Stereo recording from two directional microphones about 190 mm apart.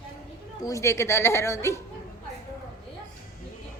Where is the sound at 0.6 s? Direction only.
15° left (ahead or behind).